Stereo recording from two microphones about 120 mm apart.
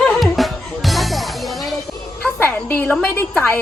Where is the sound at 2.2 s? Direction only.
15° left (ahead or behind).